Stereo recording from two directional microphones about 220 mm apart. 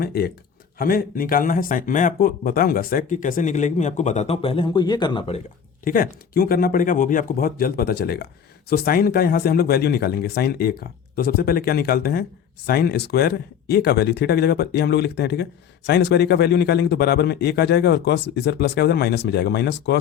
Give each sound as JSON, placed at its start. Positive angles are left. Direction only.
{"t": 0.0, "sound": "speech", "side_deg": 45}
{"t": 5.8, "sound": "speech", "side_deg": 40}